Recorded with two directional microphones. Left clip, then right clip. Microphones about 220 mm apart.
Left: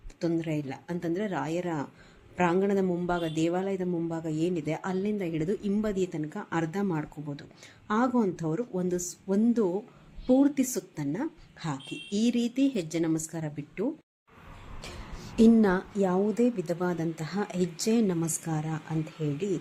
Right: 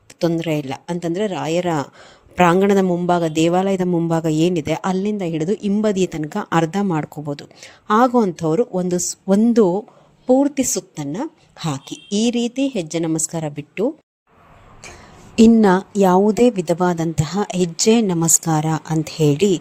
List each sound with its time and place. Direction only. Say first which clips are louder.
0.2 s speech: right 10 dB; 40° right (ahead or behind)
15.6 s speech: right 12 dB; 35° right (ahead or behind)